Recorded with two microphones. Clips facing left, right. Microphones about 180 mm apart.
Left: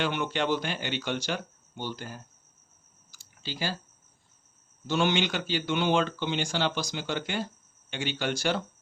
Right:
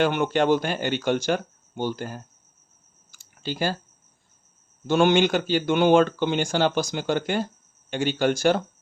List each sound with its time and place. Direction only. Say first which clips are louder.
0.0 s speech: right 8 dB; 50° right (ahead or behind)
3.1 s clicking: right 8 dB; 50° right (ahead or behind)
4.9 s speech: right 8 dB; 50° right (ahead or behind)